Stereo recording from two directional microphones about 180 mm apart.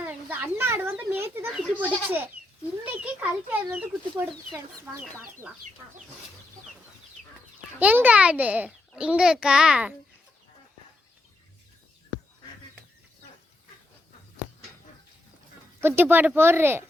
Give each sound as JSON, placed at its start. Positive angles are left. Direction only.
{"t": 0.0, "sound": "children playing", "side_deg": -10}
{"t": 1.5, "sound": "a child's voice", "side_deg": -5}
{"t": 7.8, "sound": "a child's voice", "side_deg": -10}
{"t": 15.8, "sound": "speech", "side_deg": -10}